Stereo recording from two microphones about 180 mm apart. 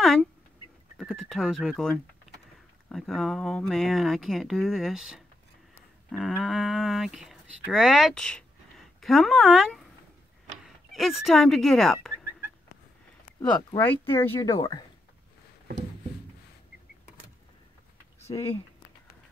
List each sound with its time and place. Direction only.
0.0 s rodents: centre (ahead or behind)
0.9 s speech: centre (ahead or behind)
13.7 s speech: 10° left (ahead or behind)
18.3 s speech: 25° left (ahead or behind)